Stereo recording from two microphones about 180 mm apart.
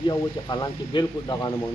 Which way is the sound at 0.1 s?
25° left (ahead or behind).